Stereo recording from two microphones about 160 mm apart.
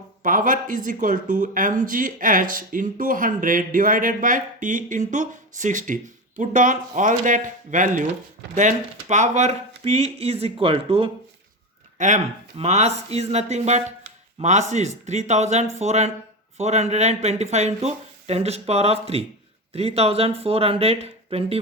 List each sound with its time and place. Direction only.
0.2 s speech: 55° right (ahead or behind); by 11.1 s 35° right (ahead or behind)
11.9 s speech: 50° right (ahead or behind)